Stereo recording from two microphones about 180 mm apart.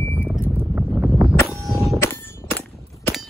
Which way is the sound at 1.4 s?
15° left (ahead or behind).